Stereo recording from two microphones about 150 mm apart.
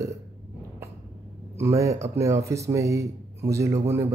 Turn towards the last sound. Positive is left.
turn(degrees=-20)  # may be behind; listen again after turning